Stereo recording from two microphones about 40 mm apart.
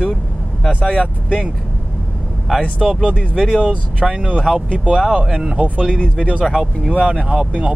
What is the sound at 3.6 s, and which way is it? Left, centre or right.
Speech, right.